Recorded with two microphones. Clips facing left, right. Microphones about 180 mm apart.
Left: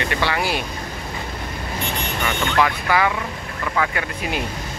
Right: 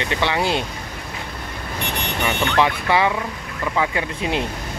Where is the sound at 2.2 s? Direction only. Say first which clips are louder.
Right 1 dB; 25° right (ahead or behind).